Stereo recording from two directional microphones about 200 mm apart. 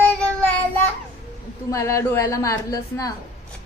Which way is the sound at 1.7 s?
15° left (ahead or behind).